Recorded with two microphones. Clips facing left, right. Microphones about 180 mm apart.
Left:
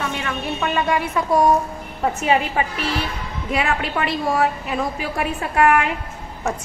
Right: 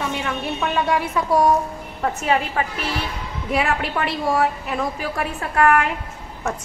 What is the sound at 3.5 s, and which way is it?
A woman's voice, centre (ahead or behind).